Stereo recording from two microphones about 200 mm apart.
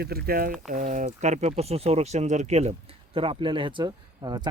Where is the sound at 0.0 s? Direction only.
50° right (ahead or behind).